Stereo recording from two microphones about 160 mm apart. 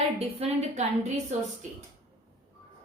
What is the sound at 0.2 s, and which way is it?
A woman's voice, 40° right (ahead or behind).